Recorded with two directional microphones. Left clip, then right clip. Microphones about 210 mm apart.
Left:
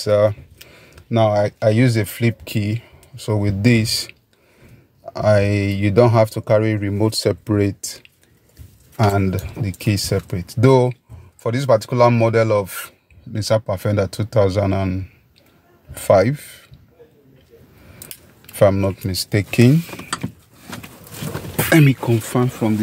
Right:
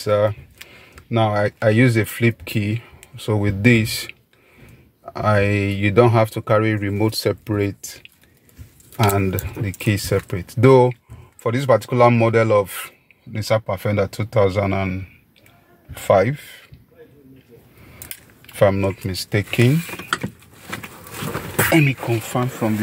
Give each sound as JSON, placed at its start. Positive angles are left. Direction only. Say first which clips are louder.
{"t": 0.0, "sound": "speech", "louder": "left 2 dB", "side_deg": 20}
{"t": 13.3, "sound": "speech", "louder": "left 1 dB", "side_deg": 25}
{"t": 16.0, "sound": "speech", "louder": "left 2 dB", "side_deg": 25}
{"t": 18.5, "sound": "speech", "louder": "left 2 dB", "side_deg": 25}
{"t": 21.7, "sound": "speech", "louder": "left 6 dB", "side_deg": 45}